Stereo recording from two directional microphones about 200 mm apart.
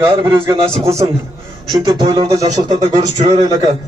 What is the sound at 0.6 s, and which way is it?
Speech, 30° right (ahead or behind).